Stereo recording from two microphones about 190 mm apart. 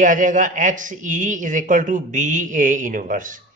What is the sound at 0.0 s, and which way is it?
A man's voice, 45° right (ahead or behind).